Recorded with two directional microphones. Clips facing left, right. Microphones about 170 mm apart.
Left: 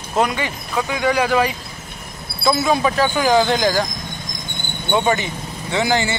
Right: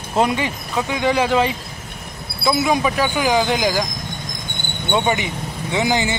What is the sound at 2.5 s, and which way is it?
A man's voice, 15° right (ahead or behind).